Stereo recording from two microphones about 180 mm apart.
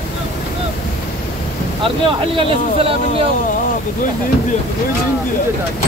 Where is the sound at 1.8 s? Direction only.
30° right (ahead or behind).